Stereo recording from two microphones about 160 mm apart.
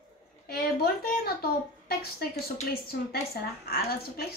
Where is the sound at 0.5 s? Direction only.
75° left (ahead or behind).